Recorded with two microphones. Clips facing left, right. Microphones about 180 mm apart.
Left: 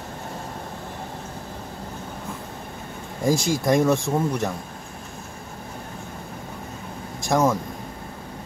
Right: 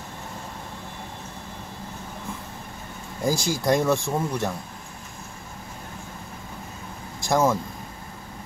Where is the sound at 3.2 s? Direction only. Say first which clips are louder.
Left 2 dB; 25° left (ahead or behind).